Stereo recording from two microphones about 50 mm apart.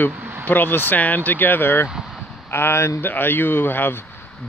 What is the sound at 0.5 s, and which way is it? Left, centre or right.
Speech, left.